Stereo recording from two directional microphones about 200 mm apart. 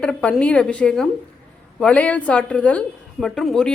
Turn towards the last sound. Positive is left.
turn(degrees=0)  # may be behind; listen again after turning